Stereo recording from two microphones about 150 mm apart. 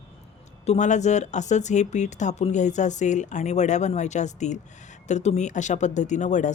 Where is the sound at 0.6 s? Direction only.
50° left (ahead or behind).